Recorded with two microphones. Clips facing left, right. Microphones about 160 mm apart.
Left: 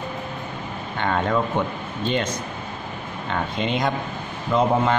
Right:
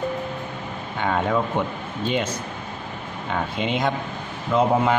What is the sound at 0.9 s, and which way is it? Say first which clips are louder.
Speech: even; 5° right (ahead or behind).